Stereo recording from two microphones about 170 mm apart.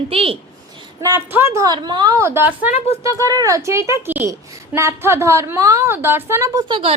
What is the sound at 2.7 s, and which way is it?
Speech, 35° left (ahead or behind).